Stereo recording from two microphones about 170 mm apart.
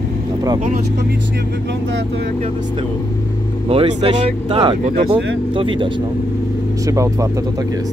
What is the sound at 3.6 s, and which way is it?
Speech, 35° right (ahead or behind).